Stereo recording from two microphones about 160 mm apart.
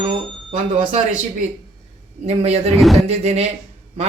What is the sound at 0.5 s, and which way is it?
Speech, 55° right (ahead or behind).